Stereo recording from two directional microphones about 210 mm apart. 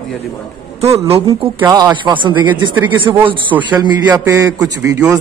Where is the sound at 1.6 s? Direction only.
15° right (ahead or behind).